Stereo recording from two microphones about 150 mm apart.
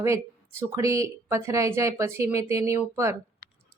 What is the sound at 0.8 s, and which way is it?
A woman's voice, 20° right (ahead or behind).